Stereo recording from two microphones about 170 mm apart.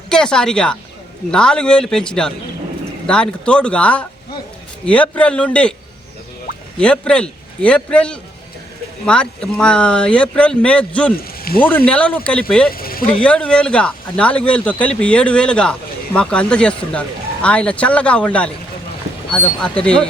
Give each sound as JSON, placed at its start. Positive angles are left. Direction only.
{"t": 0.1, "sound": "speech", "side_deg": 5}
{"t": 6.7, "sound": "speech", "side_deg": 5}
{"t": 11.2, "sound": "speech", "side_deg": 60}
{"t": 11.9, "sound": "speech", "side_deg": 5}
{"t": 12.7, "sound": "a sound", "side_deg": 60}
{"t": 13.1, "sound": "speech", "side_deg": 5}